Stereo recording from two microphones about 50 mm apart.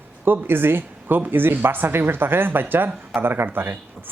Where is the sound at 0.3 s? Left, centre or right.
Right.